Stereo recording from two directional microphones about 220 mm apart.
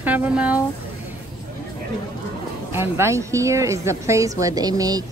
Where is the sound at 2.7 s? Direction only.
10° right (ahead or behind).